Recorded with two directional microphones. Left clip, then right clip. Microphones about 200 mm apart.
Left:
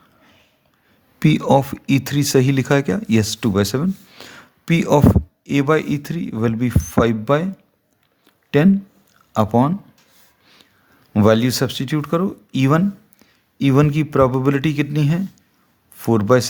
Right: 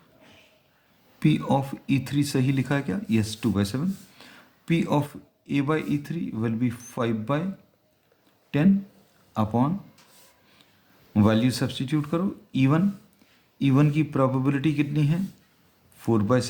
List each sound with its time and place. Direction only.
1.2 s speech: 50° left (ahead or behind)
11.1 s speech: 50° left (ahead or behind)